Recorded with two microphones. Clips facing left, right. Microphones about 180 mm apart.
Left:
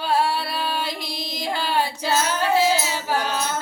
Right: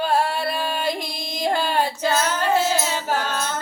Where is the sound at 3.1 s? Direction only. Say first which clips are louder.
Even; 10° left (ahead or behind).